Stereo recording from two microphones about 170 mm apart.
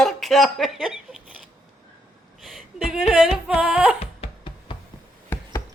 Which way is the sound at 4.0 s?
35° left (ahead or behind).